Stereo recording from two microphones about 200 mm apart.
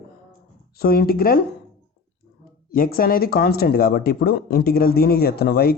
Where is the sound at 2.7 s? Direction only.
45° left (ahead or behind).